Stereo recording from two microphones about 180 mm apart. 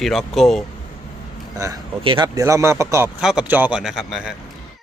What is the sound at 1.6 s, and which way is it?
Speech, 25° right (ahead or behind).